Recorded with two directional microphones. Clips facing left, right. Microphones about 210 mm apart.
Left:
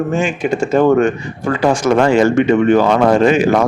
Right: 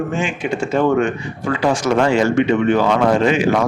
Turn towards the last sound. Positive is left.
turn(degrees=45)  # may be behind; listen again after turning